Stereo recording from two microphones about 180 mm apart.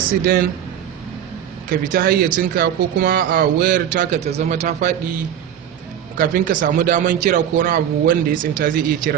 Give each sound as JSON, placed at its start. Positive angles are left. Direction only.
{"t": 1.7, "sound": "speech", "side_deg": -55}
{"t": 6.1, "sound": "speech", "side_deg": -50}